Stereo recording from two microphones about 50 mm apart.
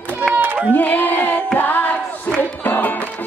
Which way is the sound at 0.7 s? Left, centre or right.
Left.